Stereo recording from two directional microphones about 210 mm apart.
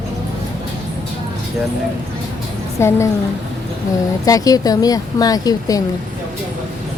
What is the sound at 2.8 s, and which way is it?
Speech, 10° left (ahead or behind).